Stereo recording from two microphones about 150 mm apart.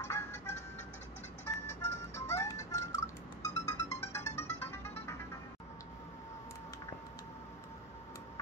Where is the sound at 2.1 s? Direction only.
20° left (ahead or behind).